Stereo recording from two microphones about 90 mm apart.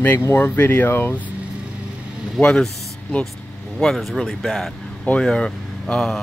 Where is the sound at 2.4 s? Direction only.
10° left (ahead or behind).